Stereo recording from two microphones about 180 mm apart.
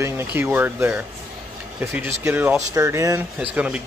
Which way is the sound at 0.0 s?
10° right (ahead or behind).